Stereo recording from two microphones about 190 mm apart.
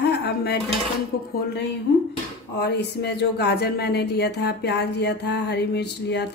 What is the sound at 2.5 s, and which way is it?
Speech, 60° left (ahead or behind).